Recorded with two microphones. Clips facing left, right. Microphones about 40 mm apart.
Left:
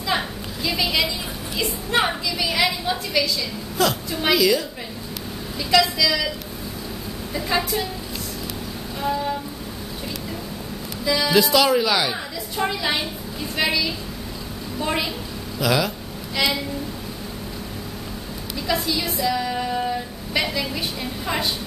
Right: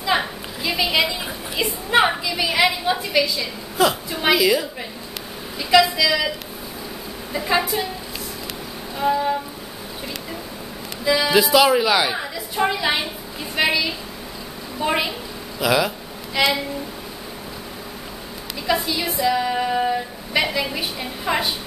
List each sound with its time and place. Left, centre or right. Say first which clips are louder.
0.0 s a sound: right 3 dB; centre
1.6 s a woman's voice: right 4 dB; centre
7.3 s a woman's voice: right 2 dB; centre
9.0 s a woman's voice: right 4 dB; centre
11.1 s a woman's voice: right 2 dB; centre
18.7 s a woman's voice: right 2 dB; centre